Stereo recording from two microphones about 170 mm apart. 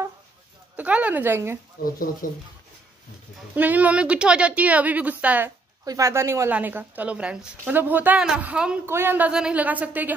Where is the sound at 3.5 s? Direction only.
10° right (ahead or behind).